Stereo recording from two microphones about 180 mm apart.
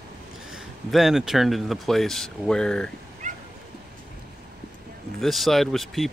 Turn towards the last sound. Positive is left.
turn(degrees=0)  # may be behind; listen again after turning